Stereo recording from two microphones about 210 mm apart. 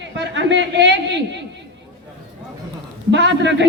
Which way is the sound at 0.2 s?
55° right (ahead or behind).